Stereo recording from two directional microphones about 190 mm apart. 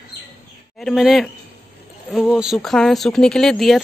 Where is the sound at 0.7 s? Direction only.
Centre (ahead or behind).